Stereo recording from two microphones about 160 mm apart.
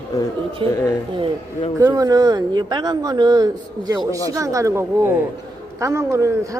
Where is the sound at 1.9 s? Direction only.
25° right (ahead or behind).